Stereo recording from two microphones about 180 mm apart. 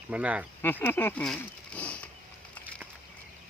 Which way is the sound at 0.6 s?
10° left (ahead or behind).